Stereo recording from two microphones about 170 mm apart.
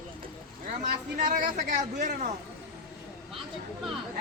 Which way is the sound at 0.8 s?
50° right (ahead or behind).